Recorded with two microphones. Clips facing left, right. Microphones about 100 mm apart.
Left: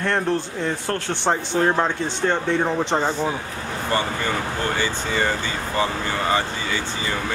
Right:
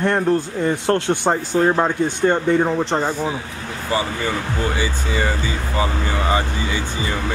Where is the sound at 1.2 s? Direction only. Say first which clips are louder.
Left 1 dB; 5° right (ahead or behind).